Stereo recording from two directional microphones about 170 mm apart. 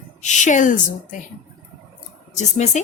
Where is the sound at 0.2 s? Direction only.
45° left (ahead or behind).